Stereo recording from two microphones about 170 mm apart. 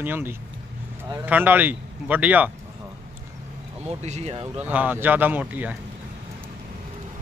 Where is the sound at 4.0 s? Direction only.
40° right (ahead or behind).